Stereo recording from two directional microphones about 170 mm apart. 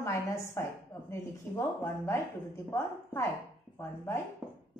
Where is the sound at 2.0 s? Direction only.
15° left (ahead or behind).